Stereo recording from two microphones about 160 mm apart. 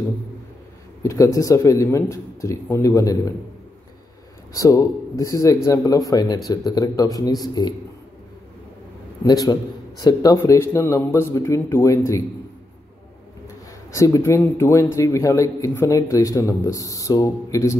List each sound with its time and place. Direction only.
1.0 s a man's voice: 20° left (ahead or behind)
4.6 s a man's voice: 20° left (ahead or behind)
9.2 s a man's voice: 25° left (ahead or behind)
13.9 s a man's voice: 20° left (ahead or behind)